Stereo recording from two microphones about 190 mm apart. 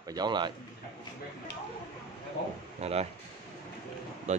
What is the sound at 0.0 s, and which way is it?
Speech, 20° right (ahead or behind).